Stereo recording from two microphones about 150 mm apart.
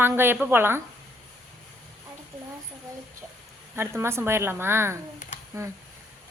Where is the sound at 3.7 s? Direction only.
15° right (ahead or behind).